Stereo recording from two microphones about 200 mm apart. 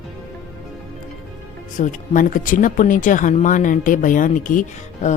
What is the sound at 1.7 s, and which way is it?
Speech, 40° left (ahead or behind).